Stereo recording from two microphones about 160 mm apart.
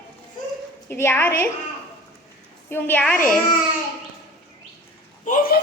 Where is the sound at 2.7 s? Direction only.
15° left (ahead or behind).